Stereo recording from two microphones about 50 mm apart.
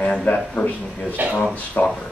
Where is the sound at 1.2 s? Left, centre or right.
Right.